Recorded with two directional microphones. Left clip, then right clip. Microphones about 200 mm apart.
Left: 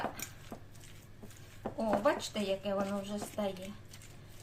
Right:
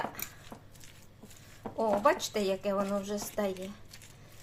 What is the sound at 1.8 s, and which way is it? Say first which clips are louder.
Speech: right 4 dB; 45° right (ahead or behind).